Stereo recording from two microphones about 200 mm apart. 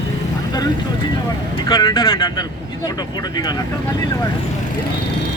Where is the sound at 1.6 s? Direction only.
20° left (ahead or behind).